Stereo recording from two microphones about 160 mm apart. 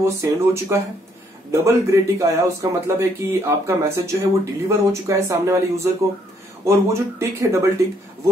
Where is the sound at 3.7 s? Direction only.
15° right (ahead or behind).